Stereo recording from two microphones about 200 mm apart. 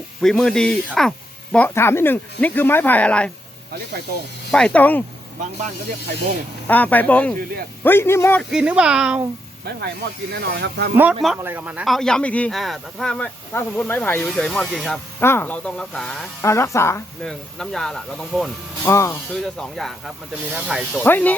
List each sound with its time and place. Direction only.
0.2 s speech: centre (ahead or behind)
4.5 s speech: 5° left (ahead or behind)
6.7 s speech: 10° left (ahead or behind)
8.4 s speech: 5° right (ahead or behind)
10.3 s speech: 60° right (ahead or behind)
10.9 s speech: 5° right (ahead or behind)
16.4 s speech: 15° left (ahead or behind)
17.2 s speech: centre (ahead or behind)
18.9 s speech: 15° left (ahead or behind)
19.4 s speech: centre (ahead or behind)
21.0 s speech: 10° left (ahead or behind)